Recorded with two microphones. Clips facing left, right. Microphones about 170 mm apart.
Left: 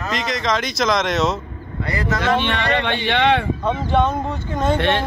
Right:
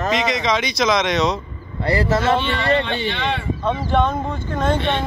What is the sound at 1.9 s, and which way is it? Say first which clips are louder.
Speech: right 5 dB; 35° right (ahead or behind).